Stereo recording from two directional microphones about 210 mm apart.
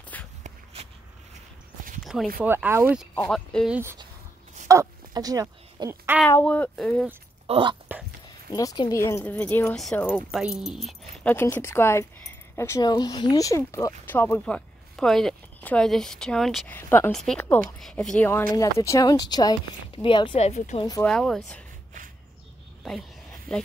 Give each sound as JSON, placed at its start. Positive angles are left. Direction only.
{"t": 0.1, "sound": "shuffle", "side_deg": 5}
{"t": 2.4, "sound": "speech", "side_deg": -10}
{"t": 3.3, "sound": "speech", "side_deg": 0}
{"t": 4.6, "sound": "speech", "side_deg": -15}
{"t": 6.4, "sound": "speech", "side_deg": 5}
{"t": 7.4, "sound": "speech", "side_deg": -25}
{"t": 8.5, "sound": "speech", "side_deg": 20}
{"t": 10.9, "sound": "speech", "side_deg": 10}
{"t": 21.0, "sound": "speech", "side_deg": 5}
{"t": 23.5, "sound": "speech", "side_deg": 0}